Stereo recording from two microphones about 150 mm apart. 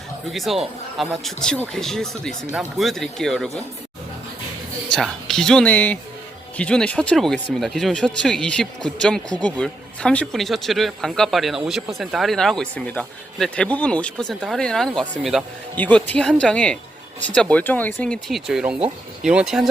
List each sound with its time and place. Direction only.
0.3 s speech: centre (ahead or behind)
4.9 s speech: centre (ahead or behind)
15.7 s speech: 10° left (ahead or behind)